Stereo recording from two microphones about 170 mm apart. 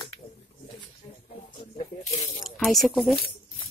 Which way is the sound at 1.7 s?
45° left (ahead or behind).